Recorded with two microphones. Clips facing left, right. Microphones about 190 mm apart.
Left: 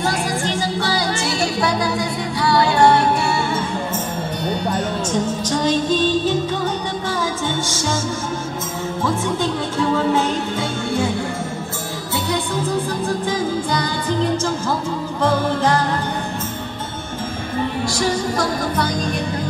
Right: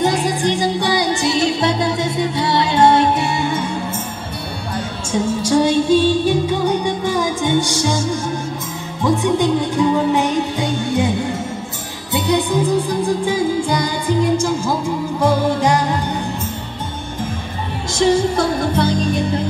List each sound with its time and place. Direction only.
0.0 s music: 20° right (ahead or behind)
5.1 s music: 10° right (ahead or behind)
9.0 s music: 15° right (ahead or behind)
12.3 s music: 15° right (ahead or behind)
17.9 s music: 25° right (ahead or behind)